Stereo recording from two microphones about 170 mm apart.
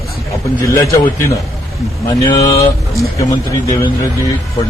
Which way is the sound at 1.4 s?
Centre (ahead or behind).